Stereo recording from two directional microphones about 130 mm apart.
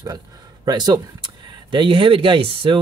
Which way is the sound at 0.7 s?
30° right (ahead or behind).